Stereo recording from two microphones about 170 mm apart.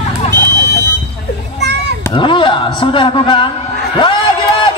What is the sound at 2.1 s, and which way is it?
A man's voice, 30° left (ahead or behind).